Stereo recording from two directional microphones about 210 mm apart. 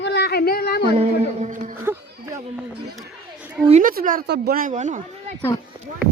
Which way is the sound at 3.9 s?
45° right (ahead or behind).